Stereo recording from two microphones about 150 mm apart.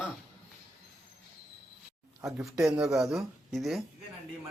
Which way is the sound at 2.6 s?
5° right (ahead or behind).